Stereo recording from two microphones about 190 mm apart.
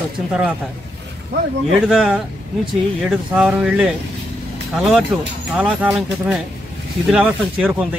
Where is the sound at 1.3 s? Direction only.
60° right (ahead or behind).